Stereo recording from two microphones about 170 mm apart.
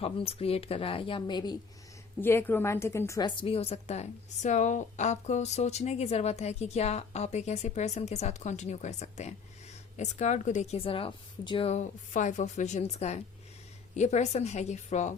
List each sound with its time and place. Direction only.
0.0 s a woman's voice: 35° left (ahead or behind)
2.2 s a woman's voice: 15° left (ahead or behind); by 15.1 s 45° left (ahead or behind)